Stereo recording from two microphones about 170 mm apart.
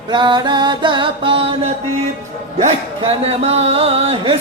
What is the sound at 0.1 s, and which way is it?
Mantra, 25° right (ahead or behind).